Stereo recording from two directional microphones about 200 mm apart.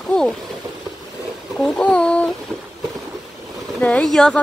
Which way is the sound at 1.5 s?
Centre (ahead or behind).